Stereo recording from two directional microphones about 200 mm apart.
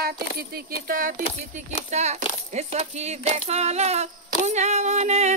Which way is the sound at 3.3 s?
30° right (ahead or behind).